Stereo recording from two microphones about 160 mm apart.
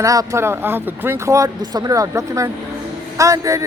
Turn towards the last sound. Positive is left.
turn(degrees=-20)  # may be behind; listen again after turning